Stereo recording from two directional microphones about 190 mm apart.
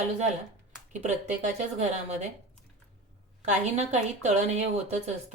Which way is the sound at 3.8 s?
35° right (ahead or behind).